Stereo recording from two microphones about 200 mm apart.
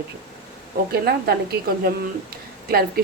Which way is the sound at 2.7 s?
50° right (ahead or behind).